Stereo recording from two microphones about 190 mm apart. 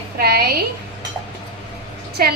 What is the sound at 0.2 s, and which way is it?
Speech, 55° right (ahead or behind).